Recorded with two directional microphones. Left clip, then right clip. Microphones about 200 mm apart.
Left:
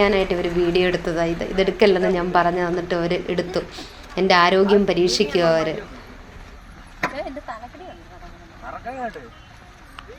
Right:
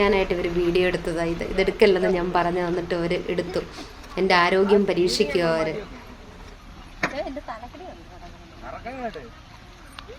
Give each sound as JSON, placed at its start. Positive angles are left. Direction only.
{"t": 0.0, "sound": "a woman's voice", "side_deg": -5}
{"t": 7.0, "sound": "speech", "side_deg": 0}